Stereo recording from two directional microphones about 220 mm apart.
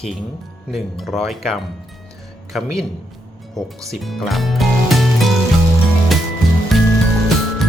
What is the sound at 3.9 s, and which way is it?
Speech, centre (ahead or behind).